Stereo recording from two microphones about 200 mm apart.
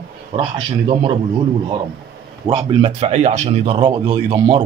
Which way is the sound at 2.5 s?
35° right (ahead or behind).